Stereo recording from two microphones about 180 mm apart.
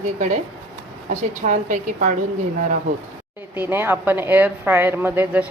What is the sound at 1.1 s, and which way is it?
A woman's voice, 45° right (ahead or behind).